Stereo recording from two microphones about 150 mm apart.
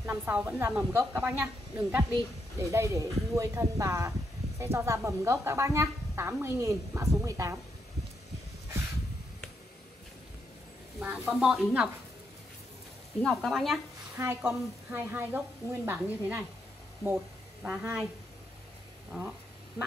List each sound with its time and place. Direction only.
0.0 s speech: 15° right (ahead or behind)
11.0 s speech: 10° right (ahead or behind)
13.2 s speech: centre (ahead or behind)
14.1 s speech: 15° right (ahead or behind)
17.6 s speech: 10° right (ahead or behind)